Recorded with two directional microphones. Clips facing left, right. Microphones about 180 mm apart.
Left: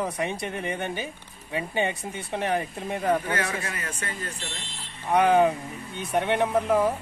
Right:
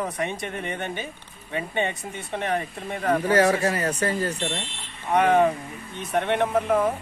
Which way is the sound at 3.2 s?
35° right (ahead or behind).